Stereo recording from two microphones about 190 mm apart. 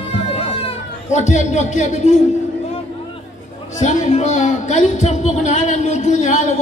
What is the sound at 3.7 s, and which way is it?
Speech, 35° left (ahead or behind).